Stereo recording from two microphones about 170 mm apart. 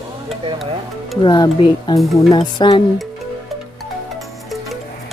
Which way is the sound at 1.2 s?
25° left (ahead or behind).